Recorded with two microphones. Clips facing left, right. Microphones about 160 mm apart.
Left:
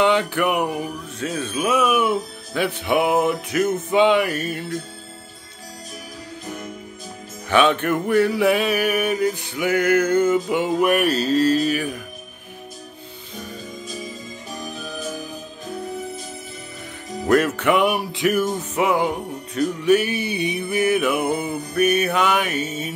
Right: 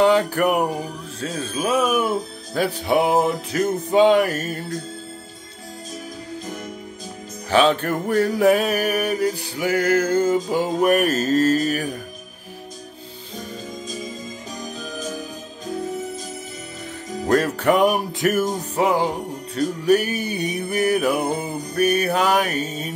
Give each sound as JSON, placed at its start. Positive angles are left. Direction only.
{"t": 0.0, "sound": "music", "side_deg": -40}
{"t": 7.4, "sound": "music", "side_deg": -35}
{"t": 17.3, "sound": "music", "side_deg": -35}